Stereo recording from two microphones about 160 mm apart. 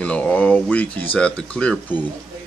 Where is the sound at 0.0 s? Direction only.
5° left (ahead or behind).